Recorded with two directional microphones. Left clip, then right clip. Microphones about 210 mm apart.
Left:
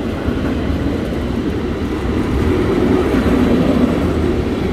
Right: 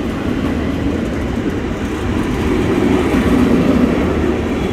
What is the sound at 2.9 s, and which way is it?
Vehicle, 45° right (ahead or behind).